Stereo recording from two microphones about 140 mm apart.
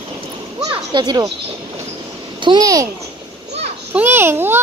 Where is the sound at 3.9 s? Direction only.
15° right (ahead or behind).